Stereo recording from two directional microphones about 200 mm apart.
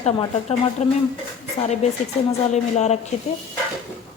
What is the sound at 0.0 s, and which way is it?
A woman's voice, 30° left (ahead or behind).